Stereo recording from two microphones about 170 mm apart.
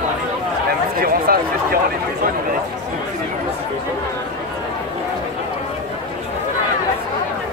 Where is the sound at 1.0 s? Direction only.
60° right (ahead or behind).